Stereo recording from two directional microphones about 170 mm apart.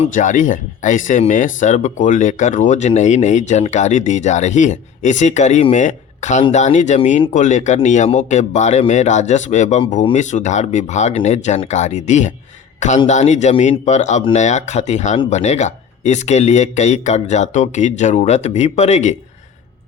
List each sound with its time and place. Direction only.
0.0 s speech: 50° left (ahead or behind)